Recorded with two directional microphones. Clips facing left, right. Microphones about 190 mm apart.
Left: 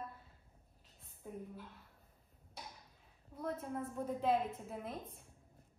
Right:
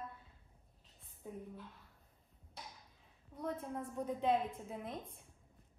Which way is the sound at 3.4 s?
Centre (ahead or behind).